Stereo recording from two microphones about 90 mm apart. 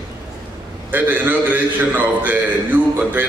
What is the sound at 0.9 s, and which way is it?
A man's voice, 20° right (ahead or behind).